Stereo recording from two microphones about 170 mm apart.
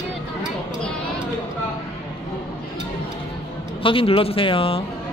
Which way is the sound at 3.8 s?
30° left (ahead or behind).